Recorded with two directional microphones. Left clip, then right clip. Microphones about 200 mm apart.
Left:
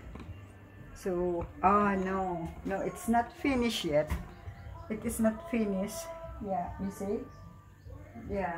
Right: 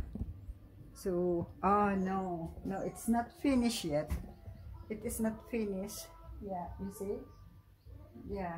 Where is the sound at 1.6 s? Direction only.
40° right (ahead or behind).